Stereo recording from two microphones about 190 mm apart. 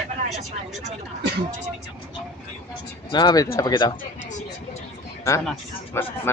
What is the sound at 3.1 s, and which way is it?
Speech, 20° left (ahead or behind).